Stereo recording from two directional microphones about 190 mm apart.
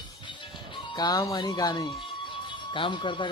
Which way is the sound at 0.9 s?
20° left (ahead or behind).